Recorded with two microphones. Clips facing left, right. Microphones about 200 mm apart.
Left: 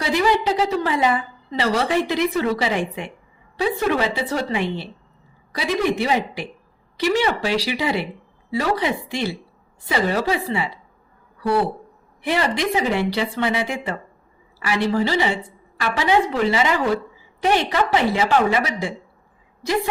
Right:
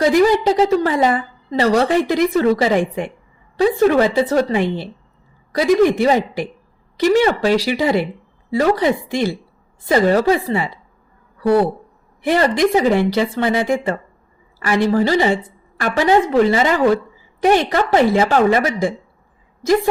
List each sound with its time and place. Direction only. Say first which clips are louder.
0.0 s a woman's voice: right 6 dB; 45° right (ahead or behind)
12.2 s a woman's voice: right 6 dB; 45° right (ahead or behind)